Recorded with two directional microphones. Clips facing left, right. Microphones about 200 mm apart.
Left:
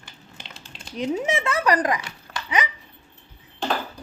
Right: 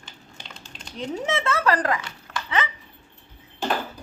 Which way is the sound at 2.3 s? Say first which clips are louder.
Right 2 dB; 35° left (ahead or behind).